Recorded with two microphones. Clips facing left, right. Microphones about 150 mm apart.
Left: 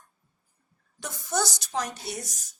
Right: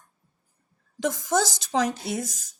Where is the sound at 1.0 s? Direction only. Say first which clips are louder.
Right 6 dB; 90° right.